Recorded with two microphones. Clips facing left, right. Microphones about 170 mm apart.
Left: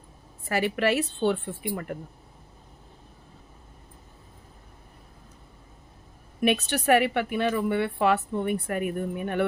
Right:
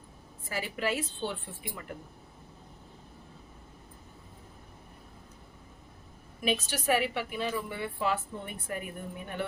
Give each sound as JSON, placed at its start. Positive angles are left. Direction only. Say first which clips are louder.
{"t": 0.4, "sound": "a woman's voice", "louder": "left 8 dB", "side_deg": 70}
{"t": 6.4, "sound": "a woman's voice", "louder": "left 7 dB", "side_deg": 65}